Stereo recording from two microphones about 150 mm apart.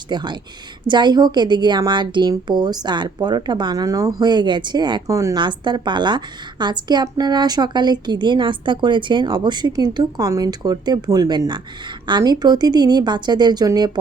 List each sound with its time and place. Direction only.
0.1 s a woman's voice: 30° right (ahead or behind)